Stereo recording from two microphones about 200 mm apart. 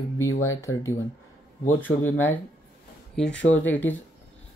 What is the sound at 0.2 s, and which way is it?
Speech, 75° left (ahead or behind).